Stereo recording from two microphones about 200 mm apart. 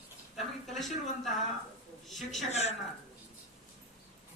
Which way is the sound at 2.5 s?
30° left (ahead or behind).